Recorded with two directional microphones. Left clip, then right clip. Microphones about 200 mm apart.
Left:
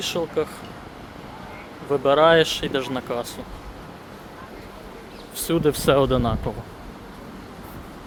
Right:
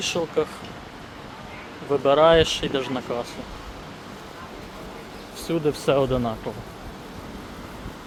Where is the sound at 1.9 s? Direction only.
10° left (ahead or behind).